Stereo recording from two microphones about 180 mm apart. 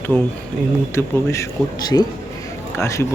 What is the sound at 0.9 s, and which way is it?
Speech, 15° left (ahead or behind).